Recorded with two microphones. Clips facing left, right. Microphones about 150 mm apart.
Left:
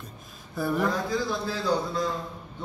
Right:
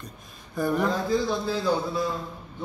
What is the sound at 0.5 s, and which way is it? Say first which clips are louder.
Speech: right 2 dB; 5° left (ahead or behind).